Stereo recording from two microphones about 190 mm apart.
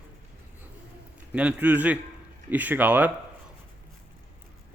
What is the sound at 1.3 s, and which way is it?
A man's voice, 5° right (ahead or behind).